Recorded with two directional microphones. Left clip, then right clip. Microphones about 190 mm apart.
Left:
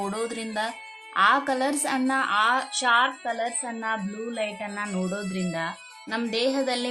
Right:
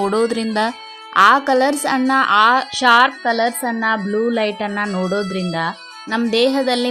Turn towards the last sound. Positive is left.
turn(degrees=-30)  # may be behind; listen again after turning